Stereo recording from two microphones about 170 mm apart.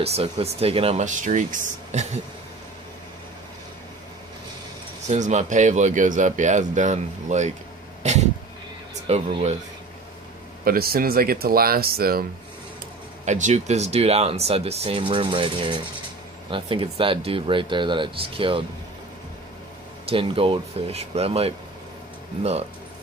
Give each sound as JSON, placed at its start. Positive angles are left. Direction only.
{"t": 0.0, "sound": "speech", "side_deg": -35}
{"t": 5.0, "sound": "speech", "side_deg": -40}
{"t": 8.0, "sound": "insect", "side_deg": -40}
{"t": 9.0, "sound": "speech", "side_deg": -40}
{"t": 10.6, "sound": "speech", "side_deg": -60}
{"t": 13.2, "sound": "speech", "side_deg": -45}
{"t": 20.1, "sound": "speech", "side_deg": -30}